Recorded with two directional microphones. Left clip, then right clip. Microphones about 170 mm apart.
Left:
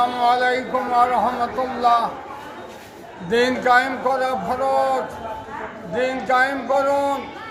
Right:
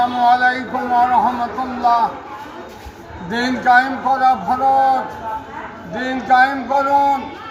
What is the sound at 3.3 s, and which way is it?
Speech, 25° left (ahead or behind).